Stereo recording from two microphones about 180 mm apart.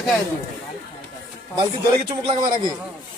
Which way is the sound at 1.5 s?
30° right (ahead or behind).